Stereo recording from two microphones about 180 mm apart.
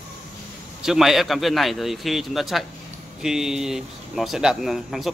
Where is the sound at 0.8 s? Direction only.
Centre (ahead or behind).